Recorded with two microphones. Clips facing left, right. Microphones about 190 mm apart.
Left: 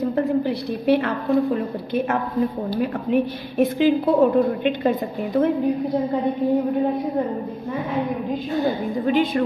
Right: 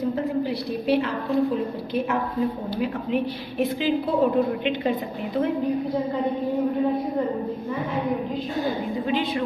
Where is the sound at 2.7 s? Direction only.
45° left (ahead or behind).